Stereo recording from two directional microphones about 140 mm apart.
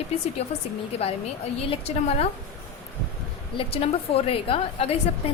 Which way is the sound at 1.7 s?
45° left (ahead or behind).